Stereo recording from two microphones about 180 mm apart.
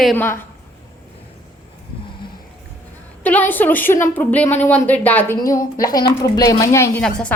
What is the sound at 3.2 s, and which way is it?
A woman's voice, 10° left (ahead or behind).